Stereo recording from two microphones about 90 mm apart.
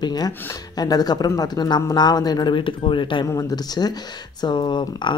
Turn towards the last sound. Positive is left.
turn(degrees=55)  # may be behind; listen again after turning